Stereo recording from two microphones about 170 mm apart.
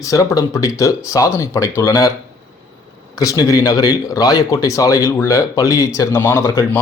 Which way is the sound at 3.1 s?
20° left (ahead or behind).